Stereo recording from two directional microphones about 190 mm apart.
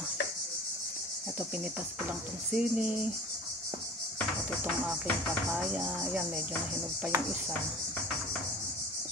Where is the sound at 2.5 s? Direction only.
5° right (ahead or behind).